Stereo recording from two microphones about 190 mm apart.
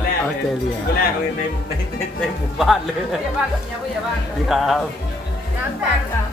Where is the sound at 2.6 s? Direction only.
Centre (ahead or behind).